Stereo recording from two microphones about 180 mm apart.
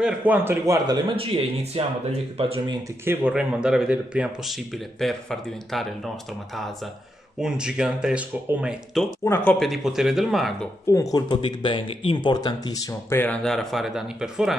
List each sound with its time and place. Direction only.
0.0 s a man's voice: 10° right (ahead or behind)
1.1 s speech: 30° right (ahead or behind)
3.1 s speech: 5° right (ahead or behind)
7.3 s speech: 5° right (ahead or behind)
9.2 s speech: 10° left (ahead or behind)
10.9 s speech: 20° left (ahead or behind); by 14.6 s 5° right (ahead or behind)